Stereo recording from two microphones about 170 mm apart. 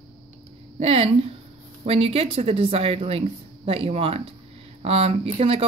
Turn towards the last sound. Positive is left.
turn(degrees=-35)  # may be behind; listen again after turning